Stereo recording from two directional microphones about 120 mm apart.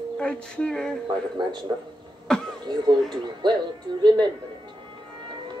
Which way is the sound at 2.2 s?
5° left (ahead or behind).